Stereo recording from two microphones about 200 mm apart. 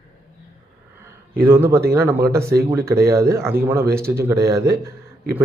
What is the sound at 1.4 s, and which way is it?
A man's voice, 10° right (ahead or behind).